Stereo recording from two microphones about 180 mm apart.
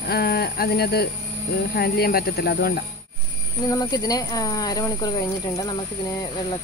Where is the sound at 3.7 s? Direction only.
20° left (ahead or behind).